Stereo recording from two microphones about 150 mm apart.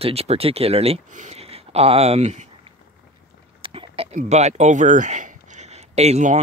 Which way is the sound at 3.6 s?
35° right (ahead or behind).